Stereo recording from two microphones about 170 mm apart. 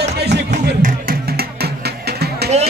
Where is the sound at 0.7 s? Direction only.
60° right (ahead or behind).